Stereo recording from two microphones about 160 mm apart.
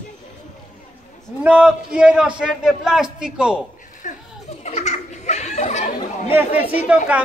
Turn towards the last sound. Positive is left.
turn(degrees=-10)  # may be behind; listen again after turning